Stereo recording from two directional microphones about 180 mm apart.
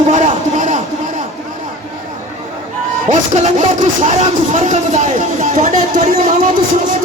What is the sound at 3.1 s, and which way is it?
Speech, 45° right (ahead or behind).